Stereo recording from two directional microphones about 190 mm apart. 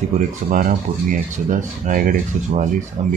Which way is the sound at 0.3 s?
45° right (ahead or behind).